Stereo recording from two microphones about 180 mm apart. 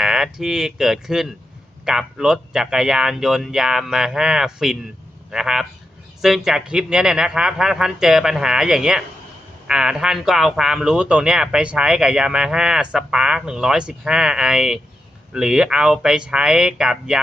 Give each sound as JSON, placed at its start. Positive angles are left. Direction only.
{"t": 0.0, "sound": "speech", "side_deg": -5}